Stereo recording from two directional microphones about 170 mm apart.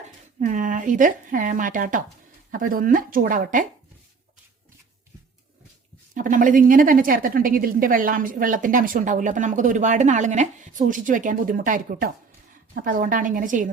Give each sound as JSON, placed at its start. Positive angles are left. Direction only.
{"t": 0.3, "sound": "a woman's voice", "side_deg": -45}
{"t": 6.1, "sound": "a woman's voice", "side_deg": -50}